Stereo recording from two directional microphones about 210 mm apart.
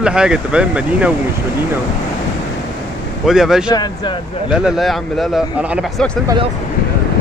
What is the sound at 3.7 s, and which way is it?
Speech, 20° left (ahead or behind).